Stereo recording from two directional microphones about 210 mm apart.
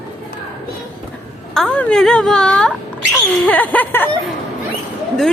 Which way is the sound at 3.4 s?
10° left (ahead or behind).